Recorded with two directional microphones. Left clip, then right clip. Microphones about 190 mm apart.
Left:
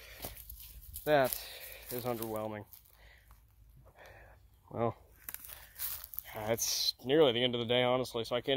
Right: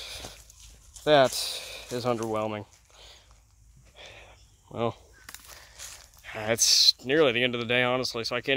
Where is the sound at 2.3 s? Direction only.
50° right (ahead or behind).